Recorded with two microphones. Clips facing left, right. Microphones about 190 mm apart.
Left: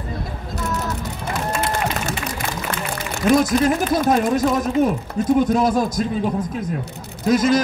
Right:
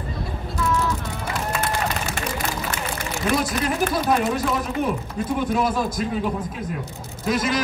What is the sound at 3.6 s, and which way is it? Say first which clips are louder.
Speech: left 4 dB; 45° left (ahead or behind).